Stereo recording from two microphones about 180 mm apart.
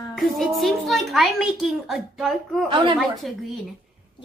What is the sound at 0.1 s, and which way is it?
A child's voice, centre (ahead or behind).